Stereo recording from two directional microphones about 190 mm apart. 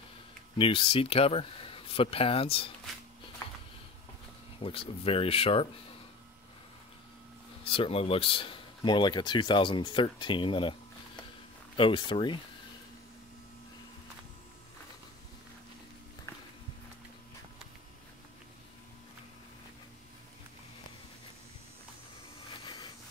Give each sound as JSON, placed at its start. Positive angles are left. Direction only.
{"t": 0.6, "sound": "speech", "side_deg": 25}
{"t": 4.6, "sound": "speech", "side_deg": 30}
{"t": 7.6, "sound": "speech", "side_deg": 30}